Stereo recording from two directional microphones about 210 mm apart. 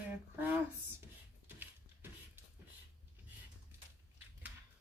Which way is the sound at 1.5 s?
10° right (ahead or behind).